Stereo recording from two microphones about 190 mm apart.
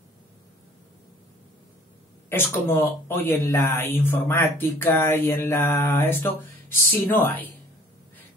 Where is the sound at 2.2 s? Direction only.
10° left (ahead or behind).